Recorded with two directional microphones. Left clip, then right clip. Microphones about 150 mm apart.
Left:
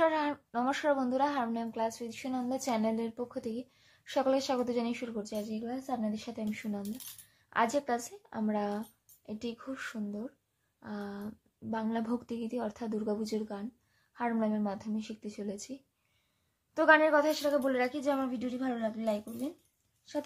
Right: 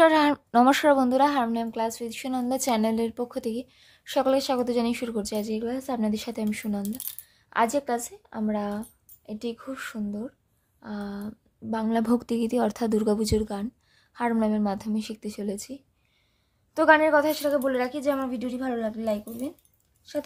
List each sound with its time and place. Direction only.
0.0 s speech: 85° right; by 6.9 s 60° right (ahead or behind)
7.4 s a woman's voice: 45° right (ahead or behind)